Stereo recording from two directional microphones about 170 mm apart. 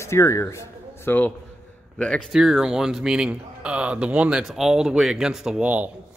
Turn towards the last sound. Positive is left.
turn(degrees=-10)  # may be behind; listen again after turning